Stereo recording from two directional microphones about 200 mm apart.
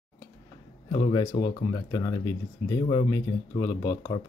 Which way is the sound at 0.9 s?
25° left (ahead or behind).